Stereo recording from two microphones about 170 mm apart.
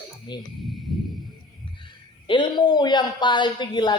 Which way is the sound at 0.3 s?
25° left (ahead or behind).